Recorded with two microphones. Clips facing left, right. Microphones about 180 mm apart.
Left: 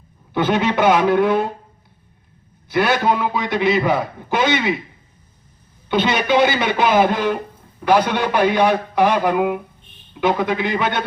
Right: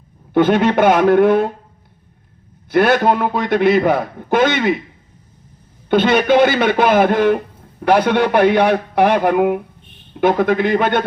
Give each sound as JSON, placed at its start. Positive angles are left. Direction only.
{"t": 0.3, "sound": "a man's voice", "side_deg": -55}
{"t": 2.6, "sound": "a man's voice", "side_deg": -55}
{"t": 5.9, "sound": "a man's voice", "side_deg": -50}